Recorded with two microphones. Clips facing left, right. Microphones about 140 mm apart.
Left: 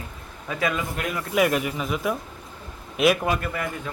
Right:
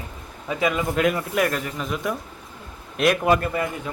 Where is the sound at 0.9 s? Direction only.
90° right.